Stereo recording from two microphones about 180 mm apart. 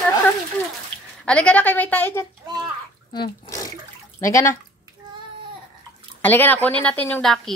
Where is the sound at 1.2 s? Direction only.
5° left (ahead or behind).